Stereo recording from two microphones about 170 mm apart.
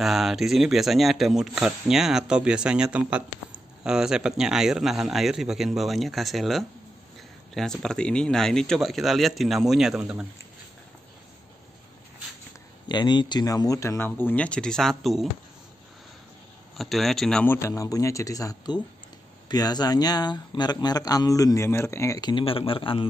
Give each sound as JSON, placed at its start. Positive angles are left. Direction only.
{"t": 0.0, "sound": "speech", "side_deg": 0}
{"t": 12.8, "sound": "speech", "side_deg": 25}
{"t": 16.7, "sound": "speech", "side_deg": 0}
{"t": 17.6, "sound": "speech", "side_deg": 20}